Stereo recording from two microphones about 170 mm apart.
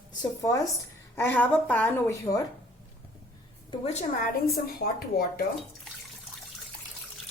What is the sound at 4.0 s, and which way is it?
Speech, 60° left (ahead or behind).